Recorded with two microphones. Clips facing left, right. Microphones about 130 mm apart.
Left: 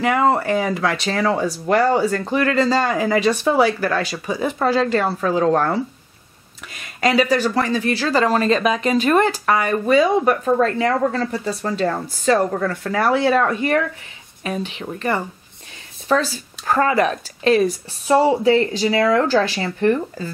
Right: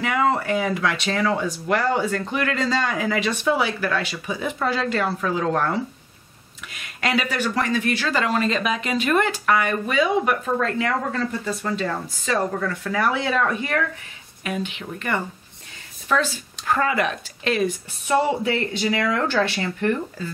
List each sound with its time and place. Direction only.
0.0 s speech: 40° left (ahead or behind)
6.7 s speech: 35° left (ahead or behind)
14.4 s speech: 35° left (ahead or behind)